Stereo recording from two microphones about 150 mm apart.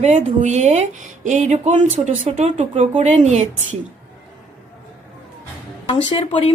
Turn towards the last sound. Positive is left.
turn(degrees=35)  # may be behind; listen again after turning